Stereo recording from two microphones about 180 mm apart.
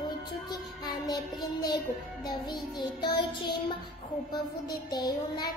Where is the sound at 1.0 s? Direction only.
20° left (ahead or behind).